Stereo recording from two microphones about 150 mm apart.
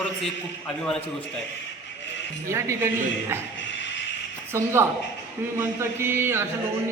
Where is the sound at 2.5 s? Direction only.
20° right (ahead or behind).